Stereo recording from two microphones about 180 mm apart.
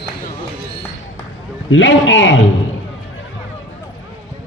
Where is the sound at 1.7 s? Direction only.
90° left.